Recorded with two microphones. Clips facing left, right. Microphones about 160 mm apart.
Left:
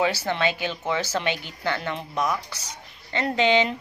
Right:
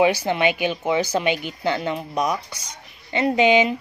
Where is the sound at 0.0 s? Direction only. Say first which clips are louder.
Right 5 dB; 15° right (ahead or behind).